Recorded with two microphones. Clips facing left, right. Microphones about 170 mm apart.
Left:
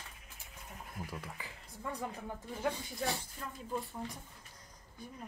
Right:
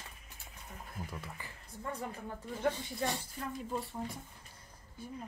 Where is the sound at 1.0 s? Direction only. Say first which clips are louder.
Left 1 dB; 10° left (ahead or behind).